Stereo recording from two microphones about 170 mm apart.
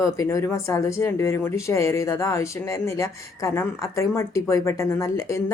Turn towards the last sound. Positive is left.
turn(degrees=20)  # may be behind; listen again after turning